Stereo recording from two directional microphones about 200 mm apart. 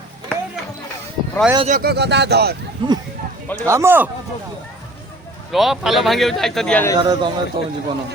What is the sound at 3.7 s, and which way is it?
Speech, 10° right (ahead or behind).